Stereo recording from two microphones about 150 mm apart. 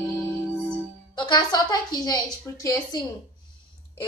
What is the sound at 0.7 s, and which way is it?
Speech, 30° left (ahead or behind).